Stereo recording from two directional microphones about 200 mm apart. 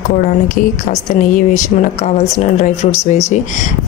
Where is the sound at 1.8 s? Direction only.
35° left (ahead or behind).